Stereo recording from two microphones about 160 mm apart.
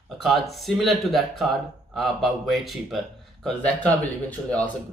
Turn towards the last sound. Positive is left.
turn(degrees=10)  # may be behind; listen again after turning